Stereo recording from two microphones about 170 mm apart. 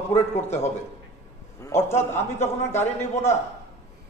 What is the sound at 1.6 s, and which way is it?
A man's voice, 15° left (ahead or behind).